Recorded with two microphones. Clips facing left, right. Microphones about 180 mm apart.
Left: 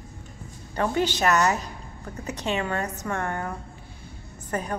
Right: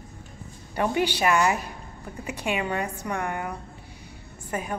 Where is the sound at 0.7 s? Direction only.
15° right (ahead or behind).